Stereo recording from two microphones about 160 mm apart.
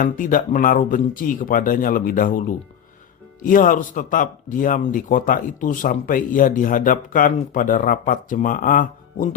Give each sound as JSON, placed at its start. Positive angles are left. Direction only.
{"t": 0.0, "sound": "speech", "side_deg": 60}